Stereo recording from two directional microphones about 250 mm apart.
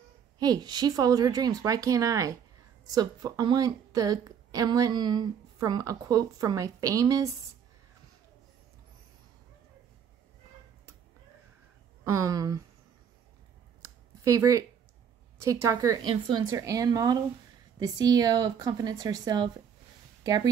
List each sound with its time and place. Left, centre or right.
0.4 s a woman's voice: centre
12.0 s a woman's voice: centre
14.2 s a woman's voice: centre